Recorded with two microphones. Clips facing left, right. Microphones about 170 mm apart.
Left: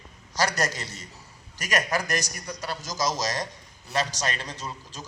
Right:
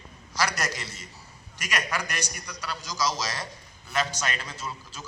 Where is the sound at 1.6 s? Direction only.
40° left (ahead or behind).